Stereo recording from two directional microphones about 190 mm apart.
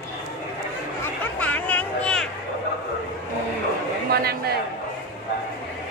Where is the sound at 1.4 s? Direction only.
10° left (ahead or behind).